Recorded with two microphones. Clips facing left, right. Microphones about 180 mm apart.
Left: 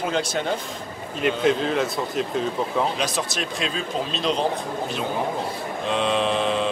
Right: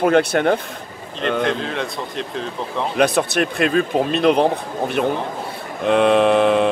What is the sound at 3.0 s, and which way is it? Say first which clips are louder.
A man's voice: right 9 dB; 60° right (ahead or behind).